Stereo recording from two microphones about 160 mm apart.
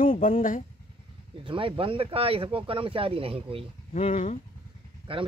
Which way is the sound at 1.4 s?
35° right (ahead or behind).